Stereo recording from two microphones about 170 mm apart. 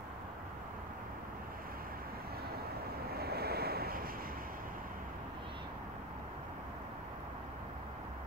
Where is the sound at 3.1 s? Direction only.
65° right (ahead or behind).